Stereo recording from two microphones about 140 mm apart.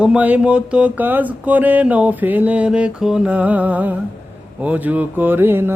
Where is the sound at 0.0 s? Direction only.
10° right (ahead or behind).